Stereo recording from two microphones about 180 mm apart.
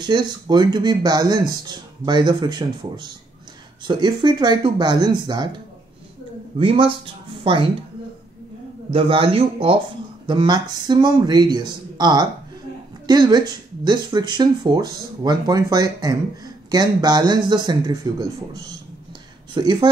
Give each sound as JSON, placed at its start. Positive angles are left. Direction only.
{"t": 0.0, "sound": "speech", "side_deg": -25}
{"t": 6.6, "sound": "speech", "side_deg": -30}
{"t": 8.9, "sound": "speech", "side_deg": -30}
{"t": 19.5, "sound": "speech", "side_deg": -25}